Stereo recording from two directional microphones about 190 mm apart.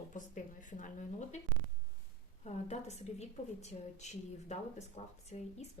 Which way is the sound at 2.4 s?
35° left (ahead or behind).